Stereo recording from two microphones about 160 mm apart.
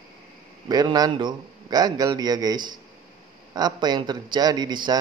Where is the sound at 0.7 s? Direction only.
25° right (ahead or behind).